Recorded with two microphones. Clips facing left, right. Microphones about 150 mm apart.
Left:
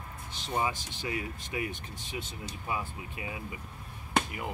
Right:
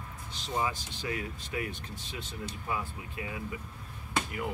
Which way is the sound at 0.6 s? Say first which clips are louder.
Left 1 dB; 20° left (ahead or behind).